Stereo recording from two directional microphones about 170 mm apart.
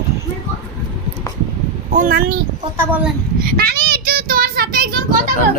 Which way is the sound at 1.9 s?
55° right (ahead or behind).